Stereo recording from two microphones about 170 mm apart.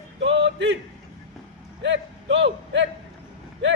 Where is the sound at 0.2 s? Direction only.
90° right.